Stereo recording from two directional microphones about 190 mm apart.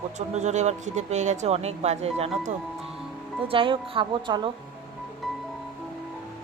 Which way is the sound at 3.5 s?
25° right (ahead or behind).